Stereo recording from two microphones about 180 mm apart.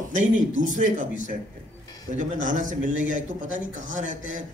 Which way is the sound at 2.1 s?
45° right (ahead or behind).